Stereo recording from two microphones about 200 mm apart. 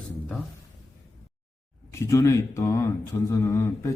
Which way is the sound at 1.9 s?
15° left (ahead or behind).